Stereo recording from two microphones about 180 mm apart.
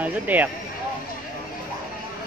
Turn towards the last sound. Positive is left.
turn(degrees=-10)  # may be behind; listen again after turning